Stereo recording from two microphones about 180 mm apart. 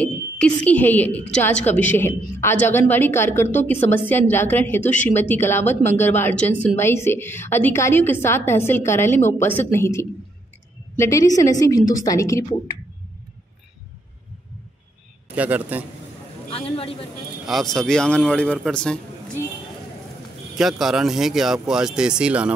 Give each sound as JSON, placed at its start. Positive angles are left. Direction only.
{"t": 0.0, "sound": "a woman's voice", "side_deg": 10}
{"t": 15.3, "sound": "a man's voice", "side_deg": -10}
{"t": 16.4, "sound": "a man's voice", "side_deg": 30}
{"t": 17.5, "sound": "a man's voice", "side_deg": 0}
{"t": 20.5, "sound": "a man's voice", "side_deg": 0}